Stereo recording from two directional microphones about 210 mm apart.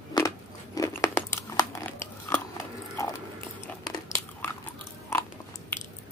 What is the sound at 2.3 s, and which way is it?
Biting, 15° left (ahead or behind).